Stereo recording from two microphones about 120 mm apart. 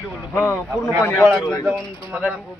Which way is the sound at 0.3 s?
25° left (ahead or behind).